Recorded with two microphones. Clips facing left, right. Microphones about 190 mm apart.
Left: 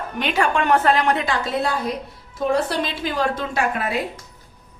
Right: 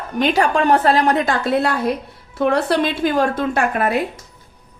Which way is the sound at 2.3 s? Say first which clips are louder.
Right 4 dB; 70° right (ahead or behind).